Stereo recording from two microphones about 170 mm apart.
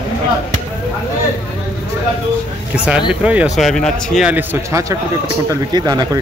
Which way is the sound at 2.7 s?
10° right (ahead or behind).